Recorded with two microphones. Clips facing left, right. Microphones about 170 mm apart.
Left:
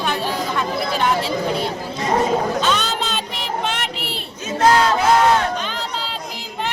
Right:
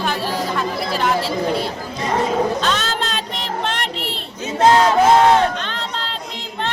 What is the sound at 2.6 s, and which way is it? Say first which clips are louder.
Child singing: left 1 dB; centre (ahead or behind).